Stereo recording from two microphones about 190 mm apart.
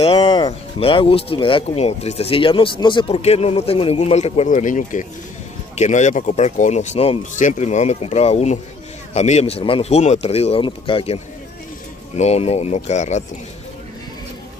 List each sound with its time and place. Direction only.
0.0 s speech: 30° left (ahead or behind)
12.2 s speech: 35° left (ahead or behind)